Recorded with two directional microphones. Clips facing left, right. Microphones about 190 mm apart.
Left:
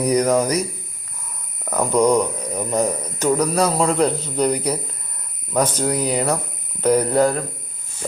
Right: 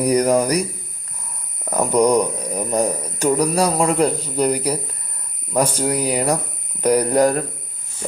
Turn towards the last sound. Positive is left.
turn(degrees=-15)  # may be behind; listen again after turning